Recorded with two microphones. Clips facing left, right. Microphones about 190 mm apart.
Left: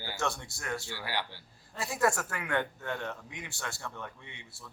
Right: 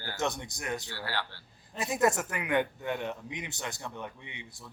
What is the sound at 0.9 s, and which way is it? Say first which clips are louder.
Speech: even; 15° left (ahead or behind).